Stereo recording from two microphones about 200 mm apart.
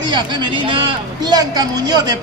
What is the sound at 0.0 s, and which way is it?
Speech, 20° right (ahead or behind).